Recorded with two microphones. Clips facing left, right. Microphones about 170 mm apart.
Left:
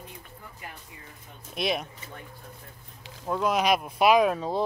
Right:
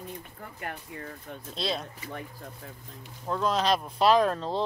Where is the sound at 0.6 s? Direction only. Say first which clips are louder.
Right 10 dB; 65° right (ahead or behind).